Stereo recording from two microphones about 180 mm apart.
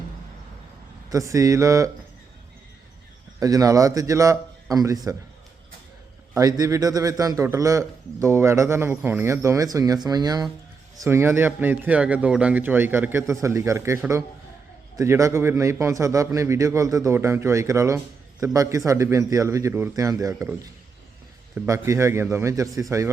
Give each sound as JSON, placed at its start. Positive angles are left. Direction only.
{"t": 1.1, "sound": "a man's voice", "side_deg": -20}
{"t": 3.4, "sound": "a man's voice", "side_deg": -20}
{"t": 6.3, "sound": "a man's voice", "side_deg": -20}